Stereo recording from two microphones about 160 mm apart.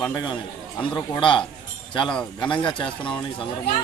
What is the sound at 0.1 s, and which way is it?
Speech, 25° left (ahead or behind).